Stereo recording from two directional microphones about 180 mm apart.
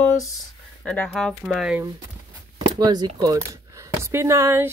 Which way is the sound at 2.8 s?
20° right (ahead or behind).